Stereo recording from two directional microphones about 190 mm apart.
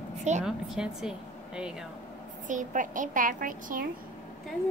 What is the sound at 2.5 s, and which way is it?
A woman's voice, 45° right (ahead or behind).